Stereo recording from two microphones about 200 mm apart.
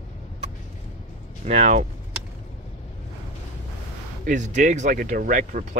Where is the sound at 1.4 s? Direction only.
35° right (ahead or behind).